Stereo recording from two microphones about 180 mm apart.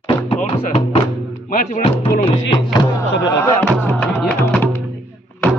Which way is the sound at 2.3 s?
25° left (ahead or behind).